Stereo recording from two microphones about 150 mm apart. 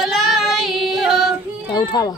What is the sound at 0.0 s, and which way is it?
Child singing, centre (ahead or behind).